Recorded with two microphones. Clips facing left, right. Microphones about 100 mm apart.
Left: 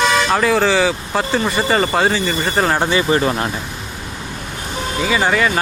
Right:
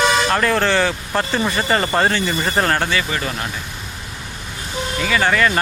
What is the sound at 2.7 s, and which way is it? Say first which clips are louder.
Speech: left 5 dB; 20° left (ahead or behind).